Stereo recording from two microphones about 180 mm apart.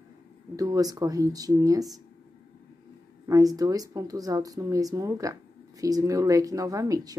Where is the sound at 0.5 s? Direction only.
20° right (ahead or behind).